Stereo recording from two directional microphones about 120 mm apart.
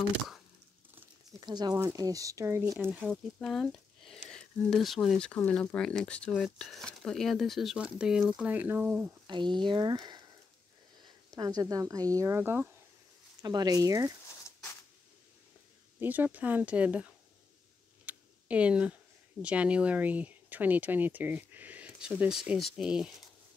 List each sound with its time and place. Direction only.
1.4 s speech: 35° right (ahead or behind)
3.0 s speech: centre (ahead or behind); by 9.1 s 15° right (ahead or behind)
9.3 s speech: 40° right (ahead or behind); by 12.6 s 20° right (ahead or behind)
13.4 s speech: 35° right (ahead or behind)
16.0 s speech: 15° right (ahead or behind)
18.0 s a sound: 10° right (ahead or behind)
19.4 s speech: 10° right (ahead or behind)